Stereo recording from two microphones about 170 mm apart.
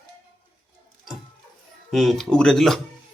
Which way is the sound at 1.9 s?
Centre (ahead or behind).